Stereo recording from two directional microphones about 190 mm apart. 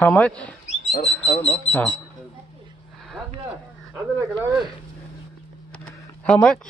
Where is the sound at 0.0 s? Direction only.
10° left (ahead or behind).